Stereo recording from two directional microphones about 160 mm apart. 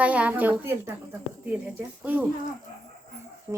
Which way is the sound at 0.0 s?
10° right (ahead or behind).